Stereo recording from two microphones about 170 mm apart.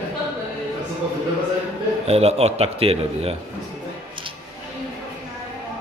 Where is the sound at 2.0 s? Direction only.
40° right (ahead or behind).